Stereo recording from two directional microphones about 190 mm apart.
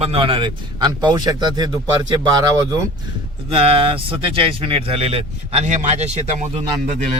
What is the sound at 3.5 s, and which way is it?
Speech, 30° right (ahead or behind).